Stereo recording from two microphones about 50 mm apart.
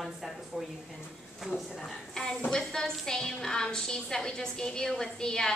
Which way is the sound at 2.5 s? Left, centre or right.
Centre.